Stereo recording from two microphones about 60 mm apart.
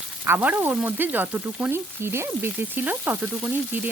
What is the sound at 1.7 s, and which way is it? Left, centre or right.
Frying, right.